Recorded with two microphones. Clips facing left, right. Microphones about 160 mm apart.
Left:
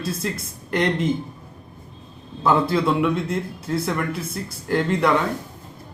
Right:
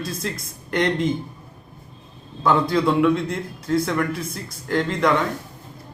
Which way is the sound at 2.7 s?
5° left (ahead or behind).